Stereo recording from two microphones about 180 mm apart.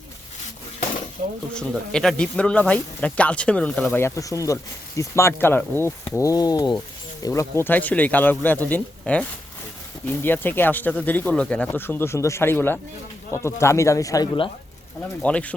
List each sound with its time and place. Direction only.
1.2 s speech: 55° right (ahead or behind)
1.5 s speech: 5° left (ahead or behind); by 14.5 s 25° left (ahead or behind)
15.2 s speech: 5° left (ahead or behind)